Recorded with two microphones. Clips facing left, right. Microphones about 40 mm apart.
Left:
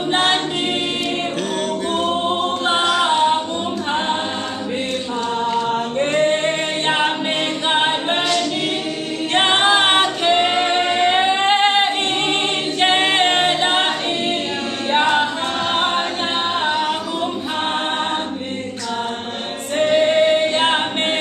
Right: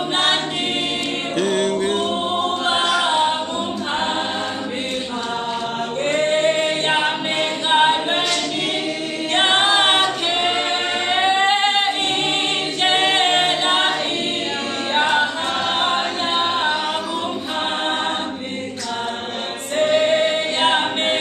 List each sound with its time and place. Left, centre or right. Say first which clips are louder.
1.4 s music: right 3 dB; right
2.0 s a capella: left 2 dB; centre
6.1 s singing: right 1 dB; centre
7.7 s a capella: right 4 dB; centre
15.7 s a capella: left 2 dB; centre
19.9 s singing: left 3 dB; centre